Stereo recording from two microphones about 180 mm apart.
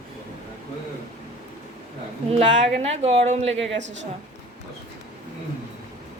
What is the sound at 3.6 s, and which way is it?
Speech, 90° right.